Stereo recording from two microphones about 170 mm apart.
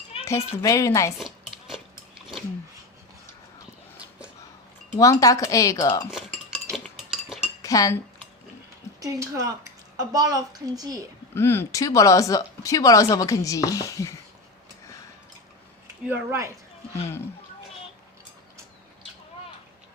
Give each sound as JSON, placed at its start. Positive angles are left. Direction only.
{"t": 0.3, "sound": "speech", "side_deg": 15}
{"t": 1.2, "sound": "cutlery", "side_deg": 0}
{"t": 4.9, "sound": "speech", "side_deg": 20}
{"t": 6.1, "sound": "cutlery", "side_deg": -5}
{"t": 7.6, "sound": "speech", "side_deg": 20}
{"t": 9.0, "sound": "speech", "side_deg": -20}
{"t": 11.3, "sound": "speech", "side_deg": 15}
{"t": 16.0, "sound": "speech", "side_deg": -15}